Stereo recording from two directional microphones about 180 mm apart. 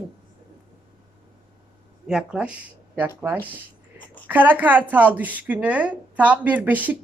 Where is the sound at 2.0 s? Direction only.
5° right (ahead or behind).